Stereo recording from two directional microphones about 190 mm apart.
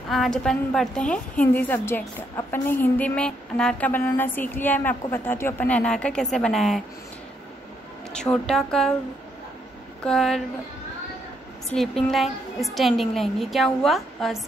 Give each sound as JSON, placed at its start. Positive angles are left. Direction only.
{"t": 0.1, "sound": "a woman's voice", "side_deg": 0}
{"t": 8.1, "sound": "a woman's voice", "side_deg": 5}
{"t": 10.0, "sound": "a woman's voice", "side_deg": 5}
{"t": 11.7, "sound": "a woman's voice", "side_deg": 0}